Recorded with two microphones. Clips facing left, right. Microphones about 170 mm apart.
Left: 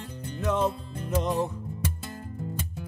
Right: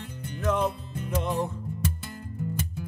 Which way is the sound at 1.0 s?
5° left (ahead or behind).